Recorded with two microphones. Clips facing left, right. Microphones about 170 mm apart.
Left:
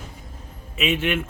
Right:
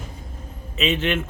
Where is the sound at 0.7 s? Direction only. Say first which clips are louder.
Right 1 dB; 10° left (ahead or behind).